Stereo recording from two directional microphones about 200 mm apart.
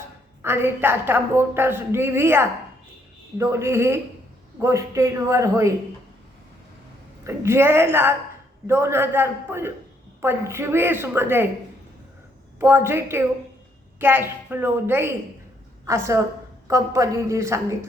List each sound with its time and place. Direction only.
0.4 s a woman's voice: 10° right (ahead or behind)
7.3 s a woman's voice: 10° right (ahead or behind)
12.5 s a woman's voice: 10° right (ahead or behind)